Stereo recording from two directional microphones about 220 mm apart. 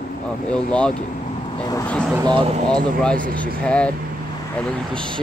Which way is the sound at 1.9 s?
5° left (ahead or behind).